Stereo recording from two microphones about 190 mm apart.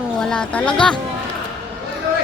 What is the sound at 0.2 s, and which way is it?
Speech, 5° left (ahead or behind).